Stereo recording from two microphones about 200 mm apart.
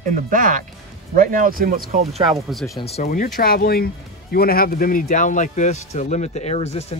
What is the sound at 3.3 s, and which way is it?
Speech, 50° left (ahead or behind).